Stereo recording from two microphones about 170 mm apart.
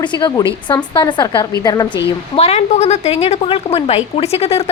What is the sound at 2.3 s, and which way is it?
A woman's voice, 35° left (ahead or behind).